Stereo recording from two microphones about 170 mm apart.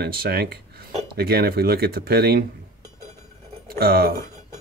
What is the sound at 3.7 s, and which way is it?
Speech, 65° right (ahead or behind).